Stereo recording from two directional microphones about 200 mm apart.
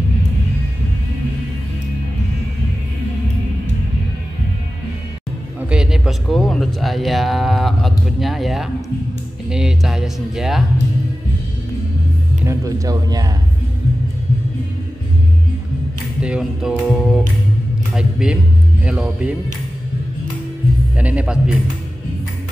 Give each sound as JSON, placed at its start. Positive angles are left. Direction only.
{"t": 5.7, "sound": "speech", "side_deg": -5}
{"t": 12.4, "sound": "a man's voice", "side_deg": -15}
{"t": 16.2, "sound": "speech", "side_deg": -5}
{"t": 20.9, "sound": "a man's voice", "side_deg": -5}